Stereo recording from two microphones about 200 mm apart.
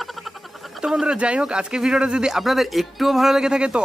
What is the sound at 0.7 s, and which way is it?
Speech, centre (ahead or behind).